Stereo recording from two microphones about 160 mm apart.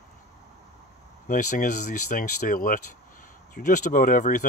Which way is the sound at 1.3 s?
50° left (ahead or behind).